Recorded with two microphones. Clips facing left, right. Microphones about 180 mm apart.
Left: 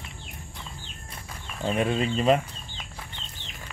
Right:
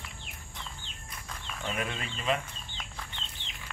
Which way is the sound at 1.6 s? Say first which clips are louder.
Left 11 dB; 30° left (ahead or behind).